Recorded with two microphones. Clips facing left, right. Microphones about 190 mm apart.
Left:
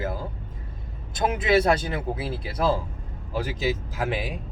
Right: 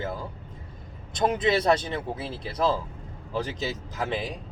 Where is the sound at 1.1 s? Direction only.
5° left (ahead or behind).